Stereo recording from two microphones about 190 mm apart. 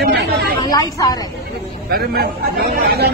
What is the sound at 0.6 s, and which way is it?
Speech, 20° left (ahead or behind).